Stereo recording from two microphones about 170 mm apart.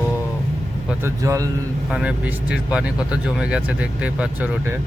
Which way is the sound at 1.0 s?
20° right (ahead or behind).